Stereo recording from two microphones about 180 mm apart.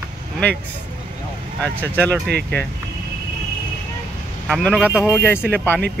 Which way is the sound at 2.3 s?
65° right (ahead or behind).